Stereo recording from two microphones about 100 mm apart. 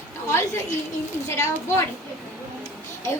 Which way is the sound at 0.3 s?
25° left (ahead or behind).